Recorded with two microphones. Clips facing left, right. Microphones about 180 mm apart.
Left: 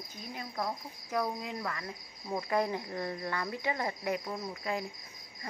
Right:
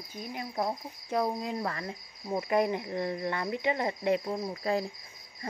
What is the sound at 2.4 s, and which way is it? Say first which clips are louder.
Speech: right 4 dB; 20° right (ahead or behind).